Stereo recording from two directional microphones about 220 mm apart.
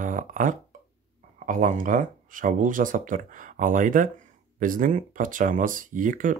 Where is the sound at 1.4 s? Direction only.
35° right (ahead or behind).